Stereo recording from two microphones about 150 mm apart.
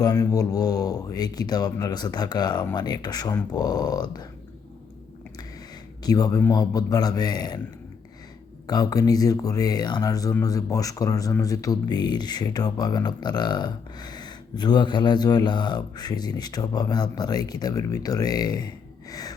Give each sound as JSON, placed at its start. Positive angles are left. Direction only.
{"t": 0.0, "sound": "speech", "side_deg": 25}
{"t": 6.0, "sound": "a man's voice", "side_deg": 25}
{"t": 8.6, "sound": "speech", "side_deg": 25}